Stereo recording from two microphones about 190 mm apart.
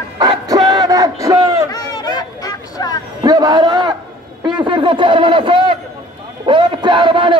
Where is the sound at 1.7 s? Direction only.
20° left (ahead or behind).